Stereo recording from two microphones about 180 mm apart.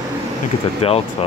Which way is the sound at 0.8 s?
35° left (ahead or behind).